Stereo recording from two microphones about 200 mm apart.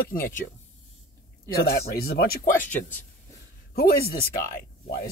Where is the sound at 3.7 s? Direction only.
50° left (ahead or behind).